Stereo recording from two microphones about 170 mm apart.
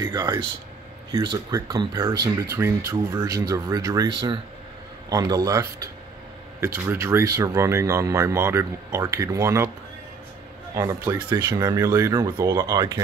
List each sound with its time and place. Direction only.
0.0 s speech: 25° right (ahead or behind)
6.9 s speech: 15° right (ahead or behind)
10.7 s speech: 20° right (ahead or behind)